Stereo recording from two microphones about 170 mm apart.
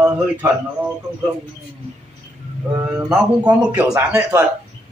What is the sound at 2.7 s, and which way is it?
A man's voice, 15° right (ahead or behind).